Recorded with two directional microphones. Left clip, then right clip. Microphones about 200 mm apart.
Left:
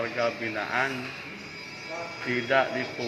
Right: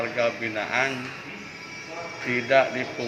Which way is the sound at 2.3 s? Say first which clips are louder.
Right 4 dB; 20° right (ahead or behind).